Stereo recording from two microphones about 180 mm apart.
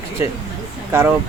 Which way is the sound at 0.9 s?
15° right (ahead or behind).